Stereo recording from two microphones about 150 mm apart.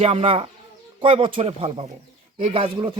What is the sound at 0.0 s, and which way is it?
Speech, 40° right (ahead or behind).